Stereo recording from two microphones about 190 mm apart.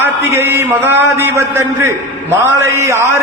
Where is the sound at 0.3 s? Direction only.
10° right (ahead or behind).